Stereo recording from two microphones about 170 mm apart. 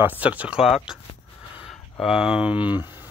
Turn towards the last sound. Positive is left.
turn(degrees=-10)  # may be behind; listen again after turning